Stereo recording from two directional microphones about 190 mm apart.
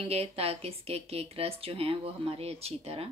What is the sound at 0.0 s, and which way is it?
Speech, 30° right (ahead or behind).